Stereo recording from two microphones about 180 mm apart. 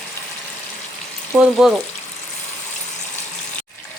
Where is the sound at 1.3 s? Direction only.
5° left (ahead or behind).